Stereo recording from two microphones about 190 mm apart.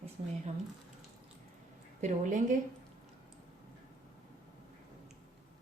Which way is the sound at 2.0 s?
40° right (ahead or behind).